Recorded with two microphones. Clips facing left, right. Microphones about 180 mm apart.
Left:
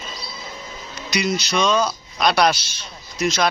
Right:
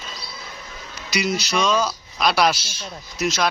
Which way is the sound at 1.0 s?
5° right (ahead or behind).